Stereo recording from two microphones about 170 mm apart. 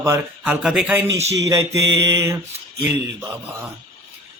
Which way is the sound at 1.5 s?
20° right (ahead or behind).